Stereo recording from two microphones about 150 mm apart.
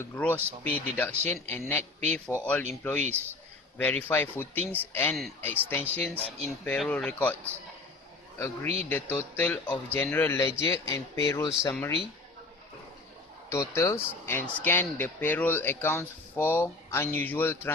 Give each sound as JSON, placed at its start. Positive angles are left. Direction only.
{"t": 0.0, "sound": "speech", "side_deg": 10}
{"t": 3.8, "sound": "speech", "side_deg": 10}
{"t": 8.6, "sound": "a man's voice", "side_deg": -45}
{"t": 8.9, "sound": "speech", "side_deg": 10}
{"t": 13.5, "sound": "speech", "side_deg": 20}